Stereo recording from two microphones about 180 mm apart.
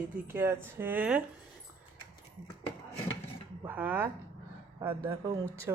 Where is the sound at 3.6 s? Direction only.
10° right (ahead or behind).